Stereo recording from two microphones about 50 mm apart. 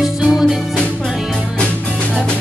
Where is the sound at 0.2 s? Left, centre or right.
Centre.